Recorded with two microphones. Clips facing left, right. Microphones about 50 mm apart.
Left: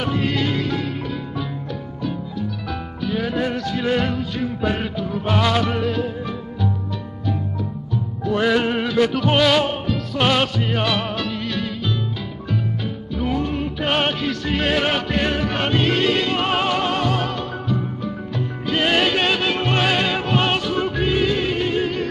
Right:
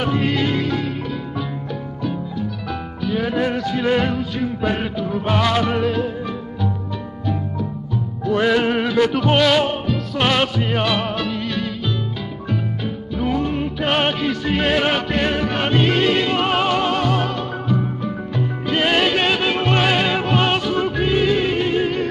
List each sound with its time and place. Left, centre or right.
0.1 s music: centre
3.2 s music: centre
4.2 s music: centre
8.4 s music: centre
15.5 s music: centre
17.7 s music: centre
18.8 s music: centre